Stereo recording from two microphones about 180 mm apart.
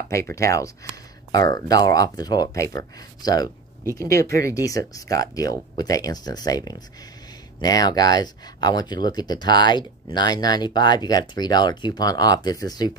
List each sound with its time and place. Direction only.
0.1 s speech: 15° left (ahead or behind)